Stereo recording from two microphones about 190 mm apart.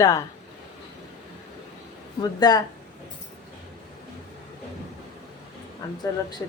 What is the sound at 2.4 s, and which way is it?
Speech, 20° left (ahead or behind).